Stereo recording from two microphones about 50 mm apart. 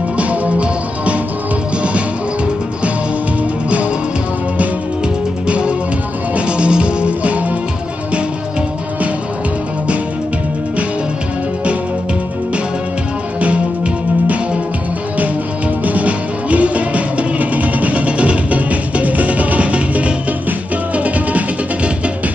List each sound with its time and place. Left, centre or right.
0.2 s music: right
5.5 s music: right
13.4 s music: right
15.8 s music: right